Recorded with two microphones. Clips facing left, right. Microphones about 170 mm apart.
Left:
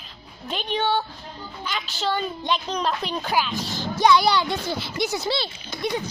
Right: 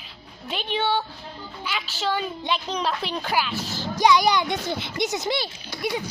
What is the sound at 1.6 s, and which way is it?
Speech, 10° right (ahead or behind).